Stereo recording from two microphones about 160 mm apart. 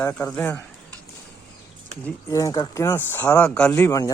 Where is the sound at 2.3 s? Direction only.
20° left (ahead or behind).